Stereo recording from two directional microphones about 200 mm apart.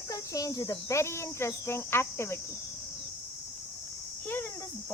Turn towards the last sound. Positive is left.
turn(degrees=10)  # may be behind; listen again after turning